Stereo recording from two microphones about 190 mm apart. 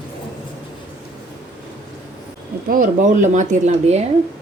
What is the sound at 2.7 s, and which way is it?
Speech, 45° right (ahead or behind).